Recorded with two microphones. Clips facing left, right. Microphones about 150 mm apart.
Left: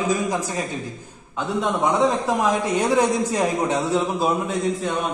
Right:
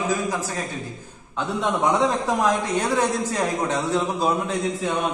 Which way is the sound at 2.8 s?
15° left (ahead or behind).